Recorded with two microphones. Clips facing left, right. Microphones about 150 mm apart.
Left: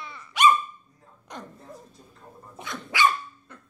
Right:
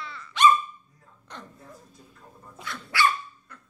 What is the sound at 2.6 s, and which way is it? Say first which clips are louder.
Dog: left 2 dB; 20° left (ahead or behind).